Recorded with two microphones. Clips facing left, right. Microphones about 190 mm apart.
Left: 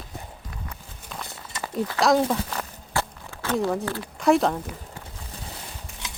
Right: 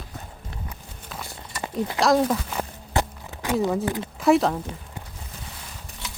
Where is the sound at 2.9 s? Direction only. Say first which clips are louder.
Right 3 dB; 20° right (ahead or behind).